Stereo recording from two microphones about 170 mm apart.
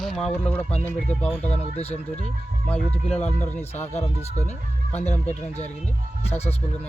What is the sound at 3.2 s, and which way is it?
Speech, 45° left (ahead or behind).